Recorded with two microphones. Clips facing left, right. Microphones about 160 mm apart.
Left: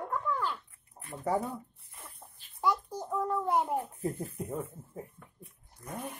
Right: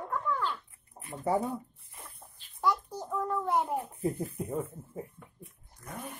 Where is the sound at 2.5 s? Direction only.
10° left (ahead or behind).